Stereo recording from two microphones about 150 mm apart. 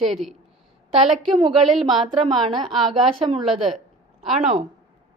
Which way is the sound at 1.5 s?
Centre (ahead or behind).